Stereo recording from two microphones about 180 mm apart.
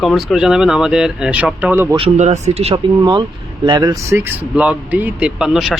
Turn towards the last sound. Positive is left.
turn(degrees=0)  # may be behind; listen again after turning